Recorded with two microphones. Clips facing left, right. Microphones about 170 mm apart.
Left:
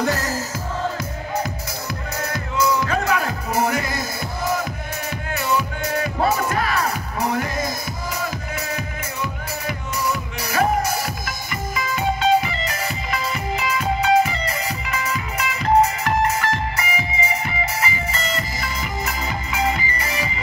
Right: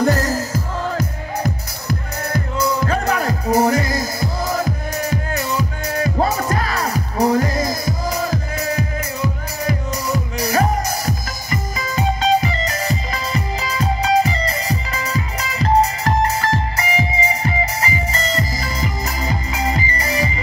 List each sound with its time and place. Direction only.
0.0 s music: 35° right (ahead or behind)
2.5 s music: 35° right (ahead or behind)